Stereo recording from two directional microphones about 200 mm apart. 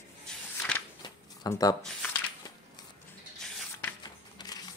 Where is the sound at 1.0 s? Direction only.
20° left (ahead or behind).